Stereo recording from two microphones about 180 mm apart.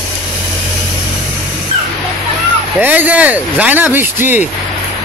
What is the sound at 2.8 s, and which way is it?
Speech, 10° right (ahead or behind).